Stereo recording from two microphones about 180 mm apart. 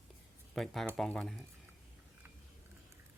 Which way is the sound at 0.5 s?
Centre (ahead or behind).